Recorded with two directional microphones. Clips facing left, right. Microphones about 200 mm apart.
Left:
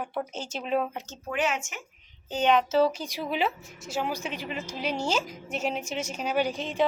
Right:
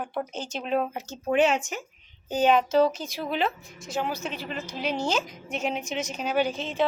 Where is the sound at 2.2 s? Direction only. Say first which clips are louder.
Right 2 dB; 10° right (ahead or behind); by 6.8 s 15° left (ahead or behind).